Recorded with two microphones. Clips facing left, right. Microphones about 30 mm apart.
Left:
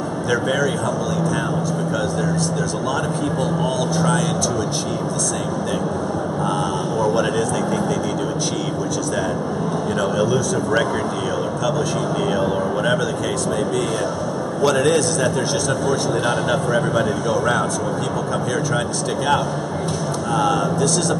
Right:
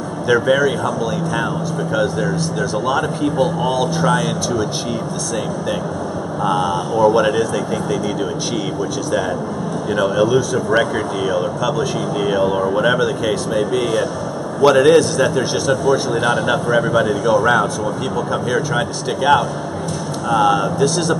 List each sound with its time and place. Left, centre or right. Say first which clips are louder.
0.3 s a man's voice: right 6 dB; centre
2.0 s a man's voice: right 6 dB; centre
6.4 s a man's voice: right 6 dB; centre
9.9 s a man's voice: right 6 dB; centre
12.3 s a man's voice: right 7 dB; centre
20.2 s a man's voice: right 5 dB; centre